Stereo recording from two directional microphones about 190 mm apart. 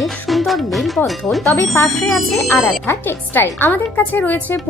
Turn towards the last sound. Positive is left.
turn(degrees=10)  # may be behind; listen again after turning